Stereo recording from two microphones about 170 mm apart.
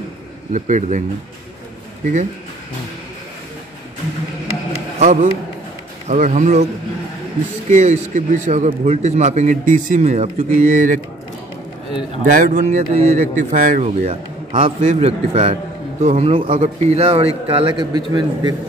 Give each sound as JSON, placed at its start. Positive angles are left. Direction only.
{"t": 0.5, "sound": "a man's voice", "side_deg": -45}
{"t": 4.9, "sound": "a man's voice", "side_deg": -45}
{"t": 7.7, "sound": "a man's voice", "side_deg": -45}
{"t": 12.3, "sound": "a man's voice", "side_deg": -50}
{"t": 17.6, "sound": "a man's voice", "side_deg": -25}